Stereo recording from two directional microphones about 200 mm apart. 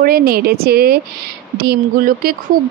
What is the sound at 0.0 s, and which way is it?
Speech, 50° right (ahead or behind).